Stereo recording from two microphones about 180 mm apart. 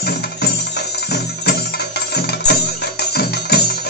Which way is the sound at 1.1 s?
65° left (ahead or behind).